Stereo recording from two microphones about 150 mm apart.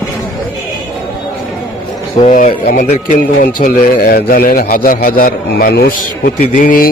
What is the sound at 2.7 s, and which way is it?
A man's voice, 65° left (ahead or behind).